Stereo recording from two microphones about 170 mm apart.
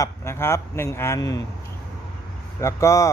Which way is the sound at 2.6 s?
15° left (ahead or behind).